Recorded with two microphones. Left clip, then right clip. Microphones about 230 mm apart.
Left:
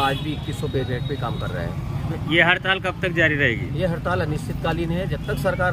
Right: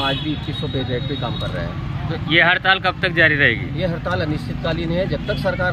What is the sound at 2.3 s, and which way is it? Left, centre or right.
Speech, centre.